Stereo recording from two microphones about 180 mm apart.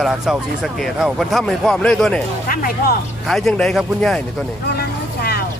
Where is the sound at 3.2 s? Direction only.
Centre (ahead or behind).